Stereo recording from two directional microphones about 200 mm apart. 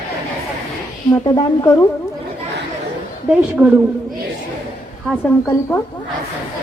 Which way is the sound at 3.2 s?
10° right (ahead or behind).